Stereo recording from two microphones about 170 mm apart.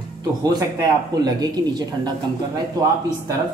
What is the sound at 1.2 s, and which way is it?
Speech, 25° right (ahead or behind).